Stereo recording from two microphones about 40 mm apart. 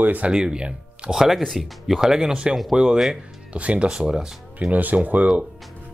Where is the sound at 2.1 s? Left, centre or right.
Centre.